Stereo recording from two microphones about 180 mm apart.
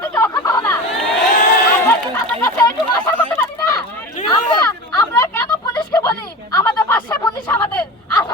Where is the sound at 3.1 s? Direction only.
10° left (ahead or behind).